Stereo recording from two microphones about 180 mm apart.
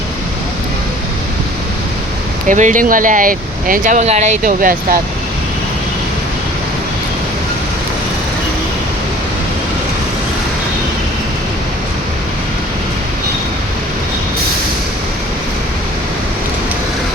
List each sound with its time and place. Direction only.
2.5 s speech: 45° right (ahead or behind)